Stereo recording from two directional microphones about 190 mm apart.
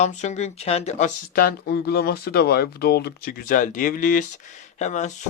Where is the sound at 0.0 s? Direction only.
35° left (ahead or behind).